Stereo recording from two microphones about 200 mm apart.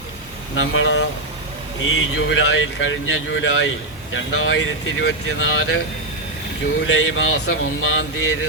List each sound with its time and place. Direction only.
0.5 s speech: 90° left; by 3.7 s 70° left (ahead or behind)
4.1 s speech: 80° left
6.8 s speech: 70° left (ahead or behind)